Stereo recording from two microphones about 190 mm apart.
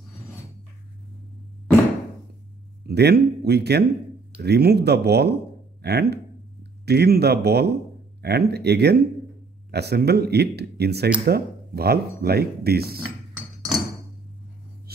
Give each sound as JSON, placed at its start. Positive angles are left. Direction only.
{"t": 2.9, "sound": "a man's voice", "side_deg": -60}